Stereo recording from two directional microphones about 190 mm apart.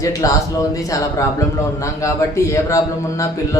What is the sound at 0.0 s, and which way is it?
A man's voice, 15° left (ahead or behind).